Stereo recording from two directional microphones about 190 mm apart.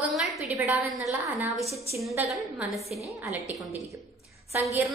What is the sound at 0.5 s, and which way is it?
A woman's voice, 10° right (ahead or behind).